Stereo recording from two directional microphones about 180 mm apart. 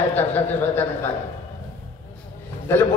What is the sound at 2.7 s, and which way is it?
Speech, 15° left (ahead or behind).